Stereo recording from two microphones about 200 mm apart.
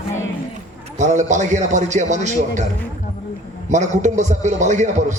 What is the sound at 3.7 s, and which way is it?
A man's voice, 35° right (ahead or behind).